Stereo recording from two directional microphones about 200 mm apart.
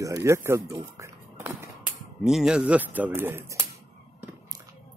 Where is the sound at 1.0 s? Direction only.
15° right (ahead or behind).